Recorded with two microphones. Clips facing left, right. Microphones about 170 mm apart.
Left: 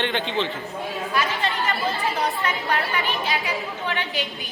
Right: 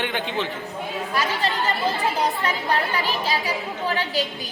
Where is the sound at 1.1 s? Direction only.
40° right (ahead or behind).